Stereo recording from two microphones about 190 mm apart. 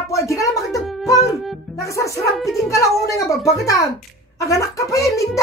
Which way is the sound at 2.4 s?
Centre (ahead or behind).